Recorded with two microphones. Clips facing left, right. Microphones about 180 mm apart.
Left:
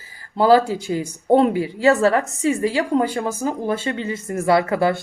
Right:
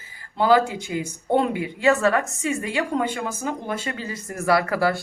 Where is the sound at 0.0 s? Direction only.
35° left (ahead or behind).